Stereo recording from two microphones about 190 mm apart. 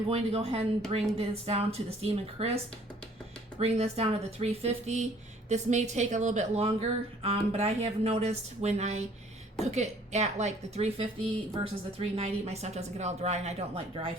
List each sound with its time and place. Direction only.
0.1 s a woman's voice: 30° right (ahead or behind)
3.6 s a woman's voice: 35° right (ahead or behind)